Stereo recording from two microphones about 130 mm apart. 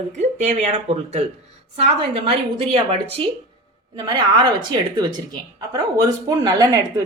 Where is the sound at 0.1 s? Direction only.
65° right (ahead or behind).